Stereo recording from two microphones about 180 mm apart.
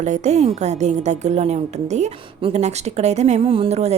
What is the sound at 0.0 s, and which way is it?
A woman's voice, 40° right (ahead or behind).